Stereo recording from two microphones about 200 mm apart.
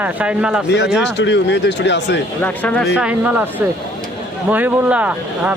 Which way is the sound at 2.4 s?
5° left (ahead or behind).